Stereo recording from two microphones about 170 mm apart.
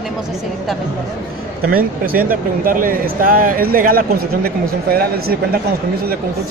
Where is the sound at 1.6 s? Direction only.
60° right (ahead or behind).